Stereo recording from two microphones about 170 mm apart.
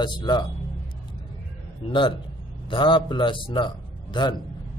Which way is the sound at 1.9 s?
30° left (ahead or behind).